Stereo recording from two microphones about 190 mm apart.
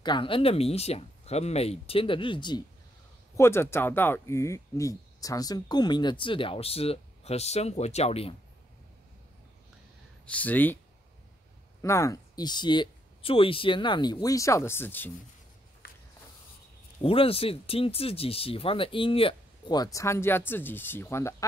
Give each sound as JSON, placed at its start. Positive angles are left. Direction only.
{"t": 0.0, "sound": "speech", "side_deg": 25}
{"t": 3.3, "sound": "speech", "side_deg": 15}
{"t": 10.2, "sound": "speech", "side_deg": 10}
{"t": 11.8, "sound": "speech", "side_deg": 15}
{"t": 15.8, "sound": "a sound", "side_deg": 50}
{"t": 17.0, "sound": "speech", "side_deg": 30}